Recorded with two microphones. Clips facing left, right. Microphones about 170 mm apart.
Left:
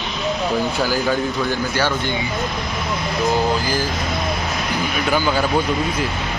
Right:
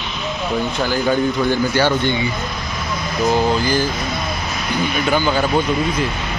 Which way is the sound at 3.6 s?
10° left (ahead or behind).